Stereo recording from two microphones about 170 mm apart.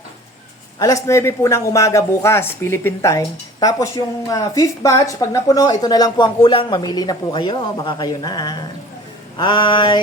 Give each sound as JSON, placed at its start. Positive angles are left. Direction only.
{"t": 0.8, "sound": "speech", "side_deg": 20}